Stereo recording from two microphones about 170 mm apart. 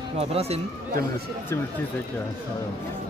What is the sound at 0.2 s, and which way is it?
Speech, 35° right (ahead or behind).